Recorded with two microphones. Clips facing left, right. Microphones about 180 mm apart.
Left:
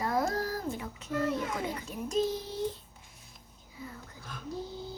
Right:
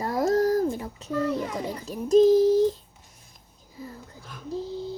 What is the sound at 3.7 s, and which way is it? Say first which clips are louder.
Speech: right 4 dB; 35° right (ahead or behind).